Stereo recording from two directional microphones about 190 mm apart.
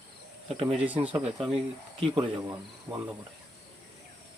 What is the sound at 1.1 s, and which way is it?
Speech, 25° right (ahead or behind).